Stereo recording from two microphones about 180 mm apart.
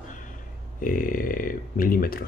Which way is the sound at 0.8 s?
50° left (ahead or behind).